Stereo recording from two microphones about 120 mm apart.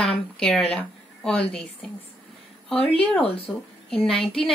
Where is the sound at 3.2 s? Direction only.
55° left (ahead or behind).